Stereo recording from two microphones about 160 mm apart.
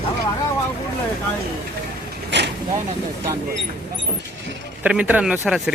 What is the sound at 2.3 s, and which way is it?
Vehicle, 90° right.